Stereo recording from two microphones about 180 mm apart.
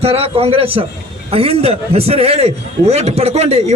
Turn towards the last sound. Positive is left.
turn(degrees=-35)  # may be behind; listen again after turning